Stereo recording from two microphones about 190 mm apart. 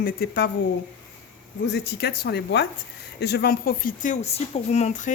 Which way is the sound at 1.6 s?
60° left (ahead or behind).